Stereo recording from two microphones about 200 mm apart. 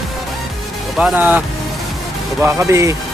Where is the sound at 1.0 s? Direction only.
5° right (ahead or behind).